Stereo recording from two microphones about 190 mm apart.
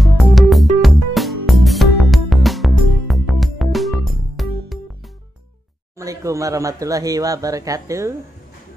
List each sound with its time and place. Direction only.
0.0 s music: centre (ahead or behind)
5.9 s speech: 15° right (ahead or behind)